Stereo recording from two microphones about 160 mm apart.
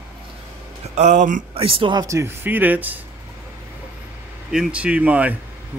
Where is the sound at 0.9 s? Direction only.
45° right (ahead or behind).